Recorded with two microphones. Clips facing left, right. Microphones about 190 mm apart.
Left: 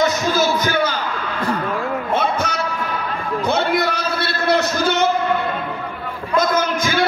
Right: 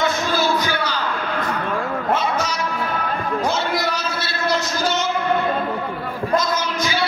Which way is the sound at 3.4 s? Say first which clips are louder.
Left 6 dB; 60° left (ahead or behind).